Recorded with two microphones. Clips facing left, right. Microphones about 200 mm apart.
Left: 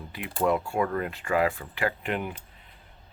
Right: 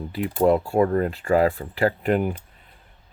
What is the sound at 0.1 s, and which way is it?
Speech, 35° right (ahead or behind).